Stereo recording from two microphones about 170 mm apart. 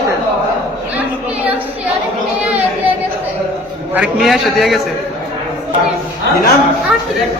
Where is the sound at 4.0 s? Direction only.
Centre (ahead or behind).